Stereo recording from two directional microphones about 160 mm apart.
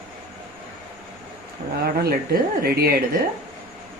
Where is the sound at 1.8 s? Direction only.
70° right (ahead or behind).